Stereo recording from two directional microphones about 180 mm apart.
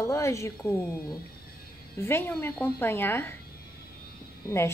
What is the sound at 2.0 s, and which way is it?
Speech, 15° left (ahead or behind).